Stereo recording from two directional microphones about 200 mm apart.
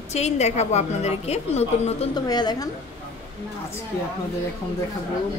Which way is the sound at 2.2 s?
20° left (ahead or behind).